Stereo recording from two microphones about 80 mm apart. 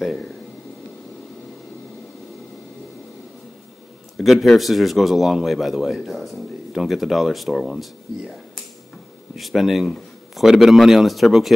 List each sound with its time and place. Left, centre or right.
4.2 s a man's voice: centre